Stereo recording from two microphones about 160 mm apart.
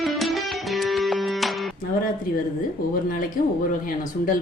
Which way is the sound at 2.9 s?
60° left (ahead or behind).